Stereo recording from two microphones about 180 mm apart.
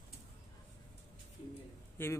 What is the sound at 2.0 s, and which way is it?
Speech, 10° left (ahead or behind).